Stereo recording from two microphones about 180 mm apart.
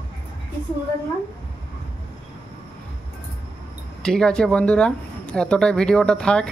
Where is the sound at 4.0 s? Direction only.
5° left (ahead or behind).